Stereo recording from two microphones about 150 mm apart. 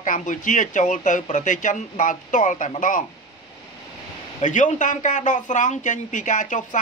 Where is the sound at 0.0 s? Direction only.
60° left (ahead or behind).